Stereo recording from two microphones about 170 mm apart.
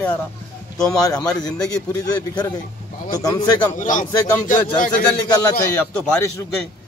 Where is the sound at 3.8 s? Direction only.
50° left (ahead or behind).